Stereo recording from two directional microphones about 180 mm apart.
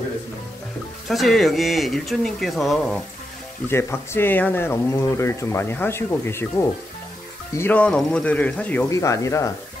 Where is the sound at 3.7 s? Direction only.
15° left (ahead or behind).